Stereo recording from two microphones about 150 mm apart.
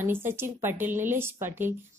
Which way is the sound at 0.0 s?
15° right (ahead or behind).